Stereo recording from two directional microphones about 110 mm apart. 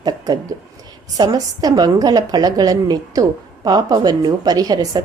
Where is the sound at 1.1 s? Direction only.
35° right (ahead or behind).